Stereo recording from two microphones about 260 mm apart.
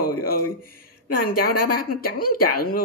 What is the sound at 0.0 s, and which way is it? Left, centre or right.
Speech, left.